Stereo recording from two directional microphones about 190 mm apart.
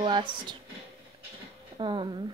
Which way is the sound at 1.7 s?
25° right (ahead or behind).